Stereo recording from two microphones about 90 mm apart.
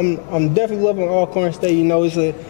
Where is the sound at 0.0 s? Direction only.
20° left (ahead or behind).